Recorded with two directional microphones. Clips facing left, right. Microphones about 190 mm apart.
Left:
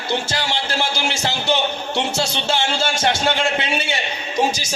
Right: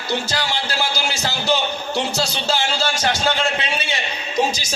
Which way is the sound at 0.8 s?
25° left (ahead or behind).